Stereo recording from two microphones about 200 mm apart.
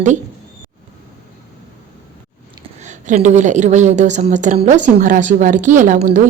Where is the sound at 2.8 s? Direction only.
35° right (ahead or behind).